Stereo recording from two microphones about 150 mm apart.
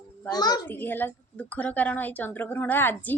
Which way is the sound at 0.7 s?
15° left (ahead or behind).